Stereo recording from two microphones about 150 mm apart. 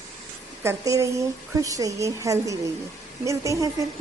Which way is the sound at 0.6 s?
20° right (ahead or behind).